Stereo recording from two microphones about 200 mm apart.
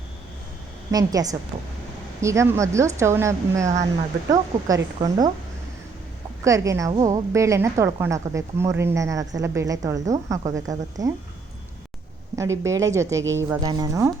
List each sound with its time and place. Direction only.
0.9 s a woman's voice: 20° right (ahead or behind)
4.9 s speech: 20° right (ahead or behind)
6.4 s a woman's voice: 15° right (ahead or behind)
12.4 s a woman's voice: 15° right (ahead or behind)